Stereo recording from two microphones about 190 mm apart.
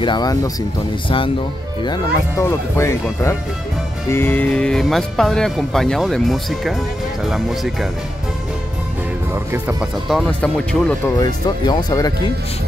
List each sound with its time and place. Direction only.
0.0 s speech: 20° left (ahead or behind); by 7.9 s centre (ahead or behind)
9.3 s speech: 10° right (ahead or behind); by 11.0 s 5° left (ahead or behind)
11.6 s speech: 20° left (ahead or behind)